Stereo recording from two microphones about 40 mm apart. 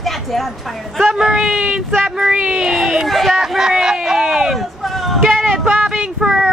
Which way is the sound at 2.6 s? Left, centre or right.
Centre.